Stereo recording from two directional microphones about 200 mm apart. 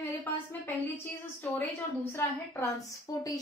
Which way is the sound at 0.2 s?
10° left (ahead or behind).